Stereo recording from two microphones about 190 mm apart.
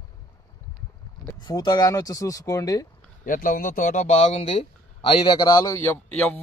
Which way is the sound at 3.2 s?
45° left (ahead or behind).